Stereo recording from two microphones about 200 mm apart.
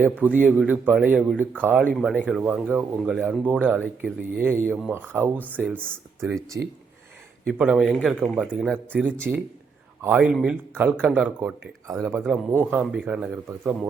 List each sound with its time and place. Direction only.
0.0 s a man's voice: 10° right (ahead or behind)
2.0 s speech: 5° left (ahead or behind)
2.2 s a man's voice: 10° right (ahead or behind)
5.8 s speech: 5° left (ahead or behind)
6.5 s speech: 60° right (ahead or behind)
7.4 s a man's voice: 5° right (ahead or behind)